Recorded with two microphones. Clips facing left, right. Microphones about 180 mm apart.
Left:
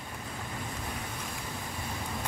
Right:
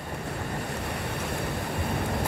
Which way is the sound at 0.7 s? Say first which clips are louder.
Right 6 dB; 70° right (ahead or behind).